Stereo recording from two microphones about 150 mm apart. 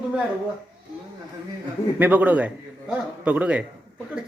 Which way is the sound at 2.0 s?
10° right (ahead or behind).